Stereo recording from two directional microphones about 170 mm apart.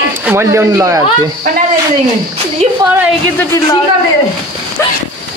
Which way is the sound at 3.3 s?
15° left (ahead or behind).